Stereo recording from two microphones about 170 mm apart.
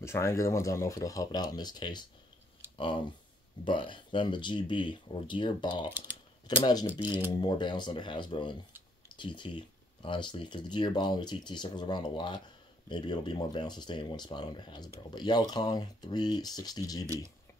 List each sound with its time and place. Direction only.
0.0 s speech: 15° left (ahead or behind)
5.9 s speech: 10° right (ahead or behind)
6.4 s speech: 25° left (ahead or behind)
17.0 s speech: 20° right (ahead or behind)